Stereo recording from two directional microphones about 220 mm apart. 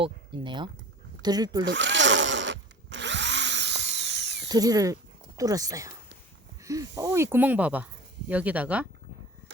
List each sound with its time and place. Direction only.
0.0 s speech: 20° right (ahead or behind)
1.6 s drill: 55° right (ahead or behind)
4.4 s speech: 15° right (ahead or behind)